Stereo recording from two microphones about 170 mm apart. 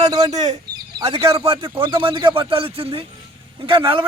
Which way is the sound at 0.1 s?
25° right (ahead or behind).